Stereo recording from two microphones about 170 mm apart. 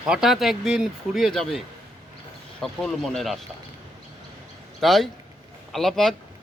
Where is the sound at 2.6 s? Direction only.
5° left (ahead or behind).